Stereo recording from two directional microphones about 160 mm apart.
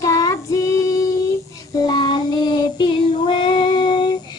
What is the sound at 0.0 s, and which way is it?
Child singing, 20° left (ahead or behind).